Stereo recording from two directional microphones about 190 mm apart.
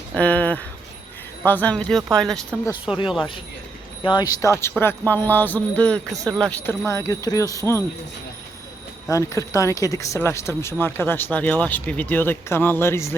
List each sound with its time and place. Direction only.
0.1 s speech: 5° left (ahead or behind)
4.0 s speech: 20° left (ahead or behind)
9.0 s speech: 15° left (ahead or behind)